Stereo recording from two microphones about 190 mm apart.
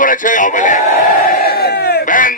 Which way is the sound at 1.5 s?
55° left (ahead or behind).